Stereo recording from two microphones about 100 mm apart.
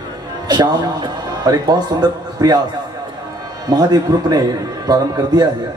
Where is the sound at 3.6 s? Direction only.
40° right (ahead or behind).